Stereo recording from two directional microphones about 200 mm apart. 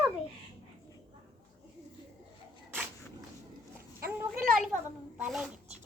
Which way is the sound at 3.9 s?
45° right (ahead or behind).